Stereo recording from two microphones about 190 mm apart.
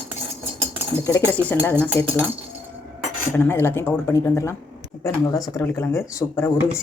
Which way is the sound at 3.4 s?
10° left (ahead or behind).